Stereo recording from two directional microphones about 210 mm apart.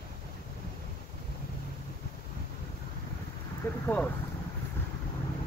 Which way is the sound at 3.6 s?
10° left (ahead or behind).